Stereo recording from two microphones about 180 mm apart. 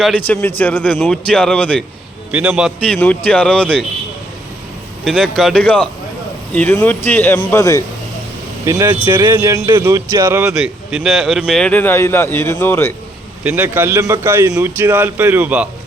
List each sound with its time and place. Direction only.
0.0 s a man's voice: 10° left (ahead or behind)
2.3 s a man's voice: 10° right (ahead or behind)
5.0 s a man's voice: centre (ahead or behind); by 7.9 s 20° left (ahead or behind)
8.6 s a man's voice: 15° right (ahead or behind)
10.6 s speech: centre (ahead or behind)
13.4 s a man's voice: 10° right (ahead or behind)